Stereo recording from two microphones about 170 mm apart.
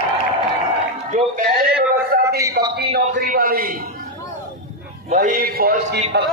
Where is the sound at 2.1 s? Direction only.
60° right (ahead or behind).